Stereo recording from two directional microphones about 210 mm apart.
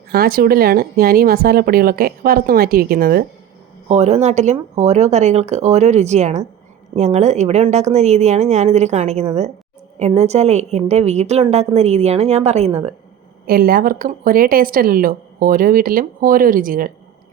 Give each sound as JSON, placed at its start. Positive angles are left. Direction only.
{"t": 0.1, "sound": "a woman's voice", "side_deg": -45}
{"t": 3.8, "sound": "a woman's voice", "side_deg": -30}
{"t": 13.5, "sound": "a woman's voice", "side_deg": -45}